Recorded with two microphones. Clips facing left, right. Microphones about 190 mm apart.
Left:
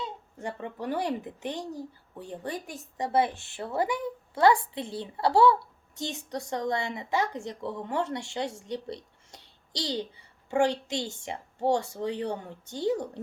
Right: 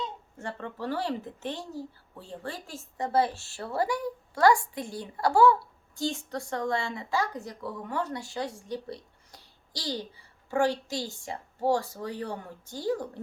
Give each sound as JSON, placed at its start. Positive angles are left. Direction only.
{"t": 0.3, "sound": "speech", "side_deg": 15}